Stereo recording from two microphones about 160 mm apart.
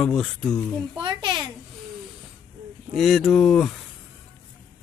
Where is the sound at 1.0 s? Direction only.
30° right (ahead or behind).